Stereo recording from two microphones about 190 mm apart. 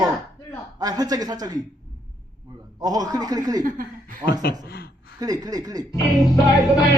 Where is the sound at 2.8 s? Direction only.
20° right (ahead or behind).